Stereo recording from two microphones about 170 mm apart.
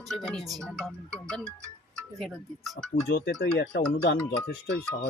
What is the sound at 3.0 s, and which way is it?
Speech, 80° left.